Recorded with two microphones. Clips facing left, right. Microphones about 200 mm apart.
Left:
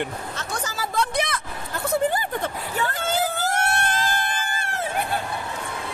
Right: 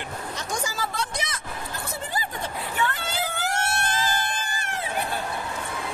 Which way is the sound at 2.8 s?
45° left (ahead or behind).